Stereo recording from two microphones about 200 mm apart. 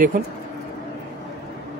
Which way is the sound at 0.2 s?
45° right (ahead or behind).